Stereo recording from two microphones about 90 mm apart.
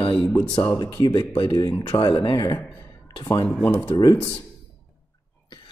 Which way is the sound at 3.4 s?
5° left (ahead or behind).